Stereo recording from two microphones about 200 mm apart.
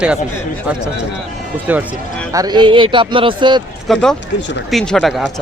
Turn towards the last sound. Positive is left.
turn(degrees=0)  # may be behind; listen again after turning